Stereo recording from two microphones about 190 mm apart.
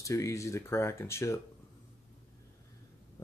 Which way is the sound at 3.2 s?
20° left (ahead or behind).